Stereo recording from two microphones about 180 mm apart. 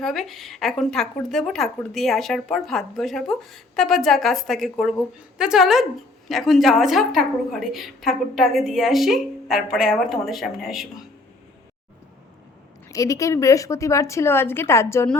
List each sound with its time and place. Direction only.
0.0 s speech: centre (ahead or behind)
12.9 s a woman's voice: 20° left (ahead or behind)